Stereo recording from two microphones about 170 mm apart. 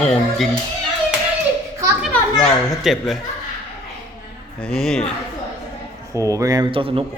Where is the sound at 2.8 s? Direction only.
Centre (ahead or behind).